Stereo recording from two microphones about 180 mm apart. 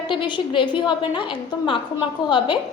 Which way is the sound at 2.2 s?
25° left (ahead or behind).